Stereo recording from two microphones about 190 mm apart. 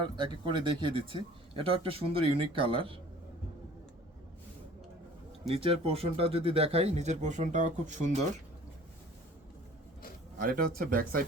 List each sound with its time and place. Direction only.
0.2 s speech: 25° right (ahead or behind)
5.5 s speech: 30° right (ahead or behind)
10.3 s speech: 50° right (ahead or behind)